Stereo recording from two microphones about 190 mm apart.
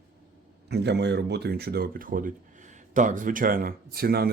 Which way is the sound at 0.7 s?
60° right (ahead or behind).